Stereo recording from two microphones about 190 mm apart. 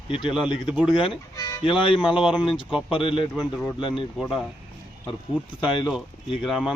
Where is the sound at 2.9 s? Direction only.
30° left (ahead or behind).